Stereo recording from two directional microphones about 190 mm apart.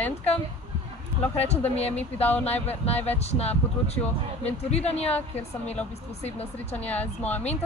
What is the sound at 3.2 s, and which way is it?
Speech, 35° left (ahead or behind).